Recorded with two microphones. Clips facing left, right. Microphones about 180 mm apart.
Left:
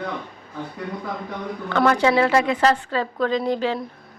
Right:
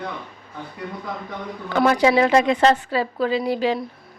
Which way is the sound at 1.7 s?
15° right (ahead or behind).